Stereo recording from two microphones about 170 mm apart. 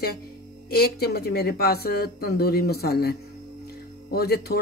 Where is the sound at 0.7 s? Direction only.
65° left (ahead or behind).